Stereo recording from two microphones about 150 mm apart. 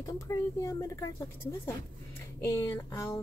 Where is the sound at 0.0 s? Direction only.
20° left (ahead or behind).